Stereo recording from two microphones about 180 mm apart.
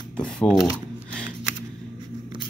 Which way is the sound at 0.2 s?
Centre (ahead or behind).